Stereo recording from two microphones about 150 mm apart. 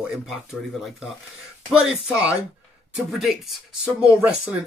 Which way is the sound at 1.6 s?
5° right (ahead or behind).